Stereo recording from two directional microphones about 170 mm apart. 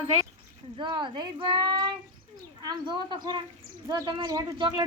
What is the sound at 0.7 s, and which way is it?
Speech, 30° right (ahead or behind).